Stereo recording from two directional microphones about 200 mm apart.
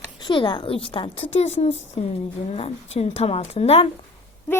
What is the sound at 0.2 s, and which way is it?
A woman's voice, 25° left (ahead or behind).